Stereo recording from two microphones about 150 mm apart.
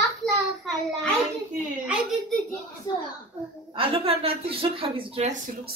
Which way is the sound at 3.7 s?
40° right (ahead or behind).